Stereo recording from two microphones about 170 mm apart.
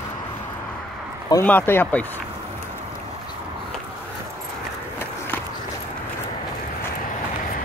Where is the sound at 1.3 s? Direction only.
10° left (ahead or behind).